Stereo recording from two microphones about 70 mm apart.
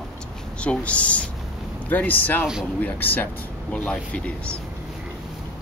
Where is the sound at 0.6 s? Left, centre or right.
Centre.